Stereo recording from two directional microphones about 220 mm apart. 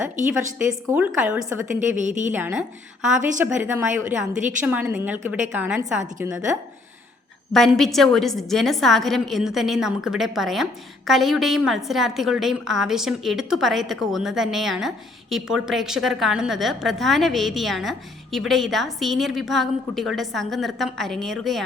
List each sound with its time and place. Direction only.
0.7 s a woman's voice: 10° right (ahead or behind)
2.0 s a woman's voice: 35° right (ahead or behind)
2.3 s a woman's voice: 5° right (ahead or behind)
7.5 s a woman's voice: centre (ahead or behind)